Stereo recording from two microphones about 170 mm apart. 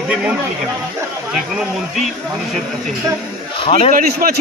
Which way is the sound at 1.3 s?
Centre (ahead or behind).